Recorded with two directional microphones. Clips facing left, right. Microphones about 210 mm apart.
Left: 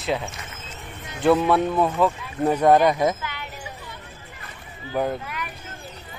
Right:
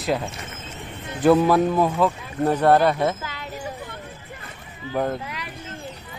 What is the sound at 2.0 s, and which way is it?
Speech, 10° left (ahead or behind).